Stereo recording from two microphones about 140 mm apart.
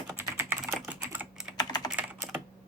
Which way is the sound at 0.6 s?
5° right (ahead or behind).